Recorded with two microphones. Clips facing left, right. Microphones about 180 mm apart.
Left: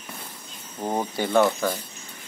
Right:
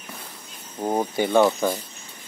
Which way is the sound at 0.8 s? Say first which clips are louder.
Right 3 dB; 10° right (ahead or behind).